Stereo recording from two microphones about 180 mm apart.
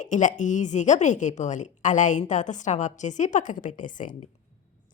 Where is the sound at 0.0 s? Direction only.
45° left (ahead or behind).